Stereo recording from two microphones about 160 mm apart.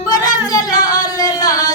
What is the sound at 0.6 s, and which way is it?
Yodeling, 25° left (ahead or behind).